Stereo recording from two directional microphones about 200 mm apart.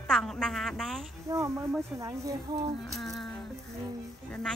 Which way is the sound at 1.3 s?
15° right (ahead or behind).